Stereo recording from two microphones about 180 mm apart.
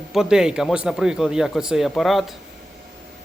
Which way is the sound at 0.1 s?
5° right (ahead or behind).